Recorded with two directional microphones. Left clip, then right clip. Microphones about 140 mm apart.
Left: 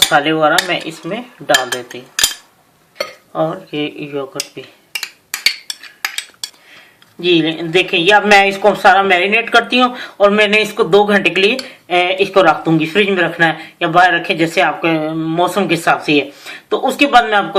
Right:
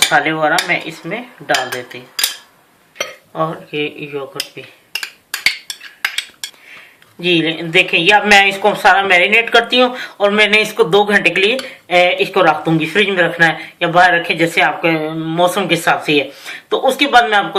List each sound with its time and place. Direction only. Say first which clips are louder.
0.1 s cutlery: left 1 dB; 55° left (ahead or behind)
3.3 s speech: left 1 dB; 45° left (ahead or behind)
7.3 s speech: left 1 dB; 45° left (ahead or behind)